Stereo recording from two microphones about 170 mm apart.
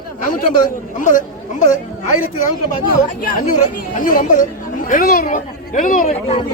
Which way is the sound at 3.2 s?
55° left (ahead or behind).